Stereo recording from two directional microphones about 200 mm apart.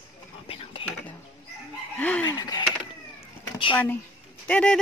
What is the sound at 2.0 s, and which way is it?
Speech, 5° left (ahead or behind).